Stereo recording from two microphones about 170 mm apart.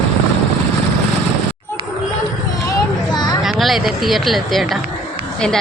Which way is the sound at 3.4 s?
Centre (ahead or behind).